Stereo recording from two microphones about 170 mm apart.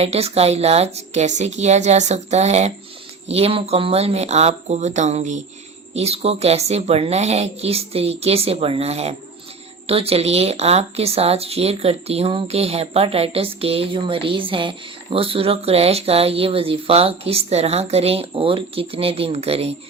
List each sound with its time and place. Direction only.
0.0 s speech: 35° right (ahead or behind)